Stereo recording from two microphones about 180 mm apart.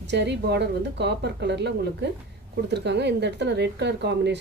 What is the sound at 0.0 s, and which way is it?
Speech, 75° right (ahead or behind).